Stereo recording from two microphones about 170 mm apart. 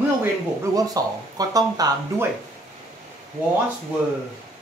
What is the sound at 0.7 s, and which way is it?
Speech, 20° right (ahead or behind).